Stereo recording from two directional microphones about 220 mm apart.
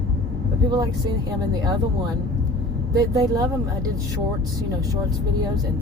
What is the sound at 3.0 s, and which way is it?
Speech, 15° right (ahead or behind).